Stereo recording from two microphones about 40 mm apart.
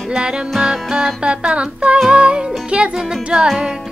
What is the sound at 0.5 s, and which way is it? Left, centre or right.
Music, centre.